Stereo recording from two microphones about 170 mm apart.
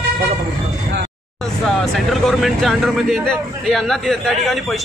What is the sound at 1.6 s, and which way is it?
Speech, centre (ahead or behind).